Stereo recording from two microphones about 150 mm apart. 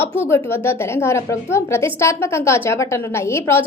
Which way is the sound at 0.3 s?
15° left (ahead or behind).